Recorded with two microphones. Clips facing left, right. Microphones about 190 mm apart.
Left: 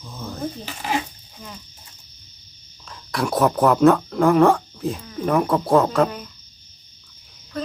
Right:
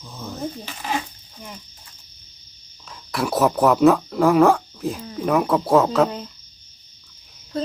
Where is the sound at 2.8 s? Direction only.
Centre (ahead or behind).